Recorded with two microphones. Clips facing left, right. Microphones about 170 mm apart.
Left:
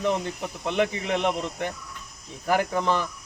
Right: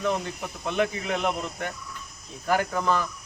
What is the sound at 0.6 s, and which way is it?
Speech, 20° left (ahead or behind).